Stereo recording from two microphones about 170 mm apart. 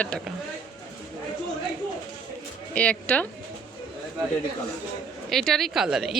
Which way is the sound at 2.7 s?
10° left (ahead or behind).